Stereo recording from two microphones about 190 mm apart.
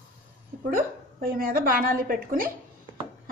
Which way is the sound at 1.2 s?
50° right (ahead or behind).